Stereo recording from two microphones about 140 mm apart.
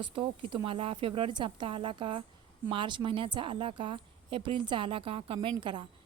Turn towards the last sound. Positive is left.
turn(degrees=-35)  # may be behind; listen again after turning